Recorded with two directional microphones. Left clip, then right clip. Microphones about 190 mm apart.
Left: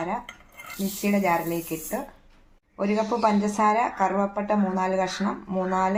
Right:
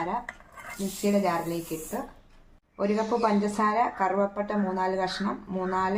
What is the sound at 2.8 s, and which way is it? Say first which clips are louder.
A woman's voice: left 2 dB; 25° left (ahead or behind).